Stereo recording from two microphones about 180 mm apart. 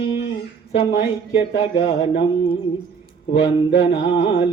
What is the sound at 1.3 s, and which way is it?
Mantra, 35° left (ahead or behind).